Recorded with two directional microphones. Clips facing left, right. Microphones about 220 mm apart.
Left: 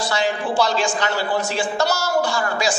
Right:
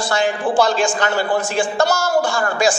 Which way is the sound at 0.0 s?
50° right (ahead or behind).